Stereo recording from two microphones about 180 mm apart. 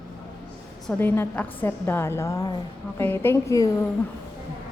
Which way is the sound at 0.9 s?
10° left (ahead or behind).